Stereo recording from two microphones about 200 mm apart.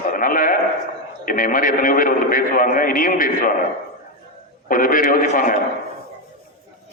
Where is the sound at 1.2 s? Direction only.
45° left (ahead or behind).